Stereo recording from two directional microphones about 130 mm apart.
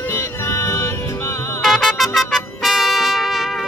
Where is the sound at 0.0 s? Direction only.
20° left (ahead or behind).